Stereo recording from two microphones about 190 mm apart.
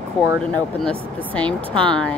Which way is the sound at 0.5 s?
5° left (ahead or behind).